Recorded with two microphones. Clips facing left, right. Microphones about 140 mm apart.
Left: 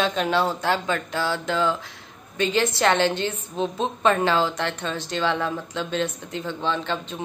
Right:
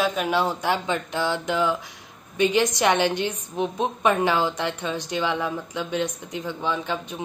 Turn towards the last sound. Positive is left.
turn(degrees=-10)  # may be behind; listen again after turning